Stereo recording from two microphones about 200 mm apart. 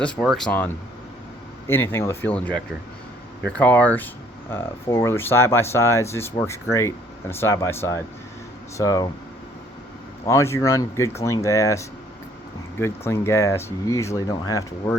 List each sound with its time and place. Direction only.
0.0 s speech: centre (ahead or behind)
3.6 s speech: 10° left (ahead or behind)
10.2 s speech: 15° left (ahead or behind)